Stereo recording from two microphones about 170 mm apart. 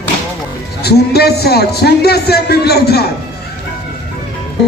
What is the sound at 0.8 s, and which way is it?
A man's voice, 70° left (ahead or behind).